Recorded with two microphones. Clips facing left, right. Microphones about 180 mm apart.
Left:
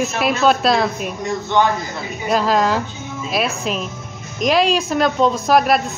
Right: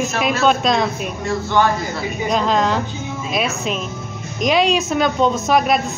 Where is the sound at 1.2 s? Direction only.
20° left (ahead or behind).